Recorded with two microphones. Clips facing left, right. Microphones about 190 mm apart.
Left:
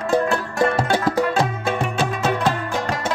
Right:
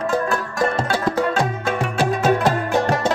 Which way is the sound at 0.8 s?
15° left (ahead or behind).